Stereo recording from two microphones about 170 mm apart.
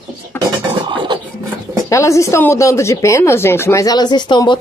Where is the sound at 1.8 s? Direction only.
20° left (ahead or behind).